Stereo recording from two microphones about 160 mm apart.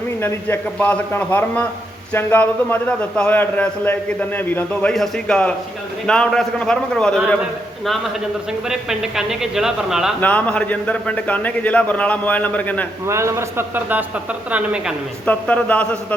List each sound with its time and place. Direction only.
0.2 s a man's voice: 15° left (ahead or behind)
8.7 s speech: 5° right (ahead or behind)
10.2 s a man's voice: 10° left (ahead or behind)
13.1 s a man's voice: 15° right (ahead or behind)
15.3 s a man's voice: 10° left (ahead or behind)